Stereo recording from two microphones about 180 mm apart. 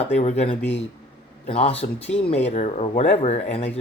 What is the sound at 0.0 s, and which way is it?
Speech, 40° left (ahead or behind).